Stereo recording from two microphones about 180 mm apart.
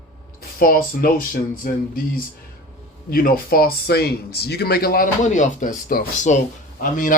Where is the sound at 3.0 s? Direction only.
55° left (ahead or behind).